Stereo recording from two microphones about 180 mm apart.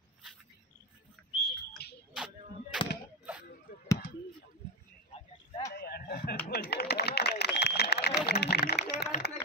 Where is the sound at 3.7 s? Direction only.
55° left (ahead or behind).